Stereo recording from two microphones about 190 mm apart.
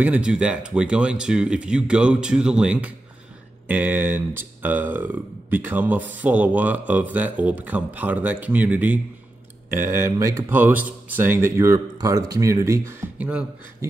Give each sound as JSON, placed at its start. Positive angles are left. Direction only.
{"t": 0.0, "sound": "speech", "side_deg": -5}